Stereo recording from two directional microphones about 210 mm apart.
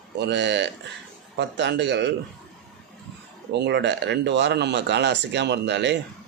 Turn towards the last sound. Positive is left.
turn(degrees=-55)  # may be behind; listen again after turning